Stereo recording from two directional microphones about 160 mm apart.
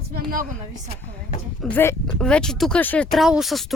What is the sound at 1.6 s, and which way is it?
Speech, 10° left (ahead or behind).